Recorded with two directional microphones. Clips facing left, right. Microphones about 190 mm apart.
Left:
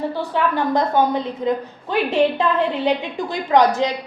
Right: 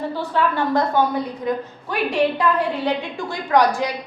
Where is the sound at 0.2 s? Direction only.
15° left (ahead or behind).